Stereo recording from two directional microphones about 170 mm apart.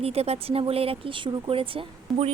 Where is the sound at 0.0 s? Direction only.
35° right (ahead or behind).